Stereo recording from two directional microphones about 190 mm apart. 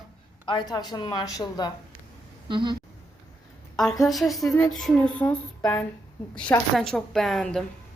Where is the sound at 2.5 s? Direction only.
25° right (ahead or behind).